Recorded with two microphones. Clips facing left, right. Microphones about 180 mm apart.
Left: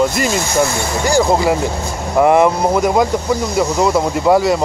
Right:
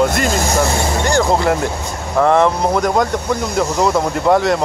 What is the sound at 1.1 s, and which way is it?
Speech, 5° left (ahead or behind).